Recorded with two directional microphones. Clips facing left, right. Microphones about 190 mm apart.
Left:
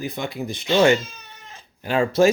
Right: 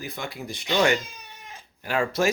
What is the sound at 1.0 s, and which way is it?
Cat, 15° right (ahead or behind).